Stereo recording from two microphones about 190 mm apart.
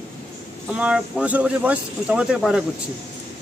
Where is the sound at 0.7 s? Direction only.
5° right (ahead or behind).